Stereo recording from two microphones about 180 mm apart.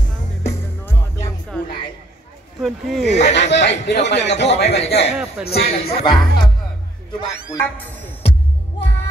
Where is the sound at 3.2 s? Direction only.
70° left (ahead or behind).